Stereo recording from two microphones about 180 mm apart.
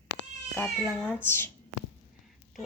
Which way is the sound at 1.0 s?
10° left (ahead or behind).